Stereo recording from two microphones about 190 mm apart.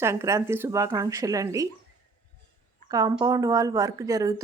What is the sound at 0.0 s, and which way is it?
A woman's voice, 15° right (ahead or behind).